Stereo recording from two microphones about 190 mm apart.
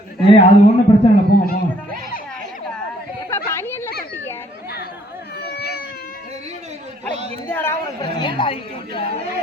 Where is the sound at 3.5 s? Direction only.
15° left (ahead or behind).